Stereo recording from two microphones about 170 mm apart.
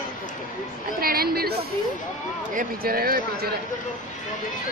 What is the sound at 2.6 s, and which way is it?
Speech, 60° right (ahead or behind).